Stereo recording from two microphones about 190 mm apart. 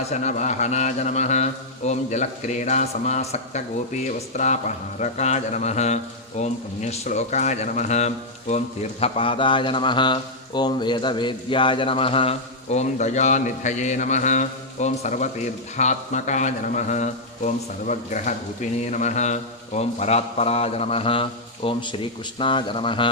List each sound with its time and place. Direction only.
0.1 s speech: 35° left (ahead or behind)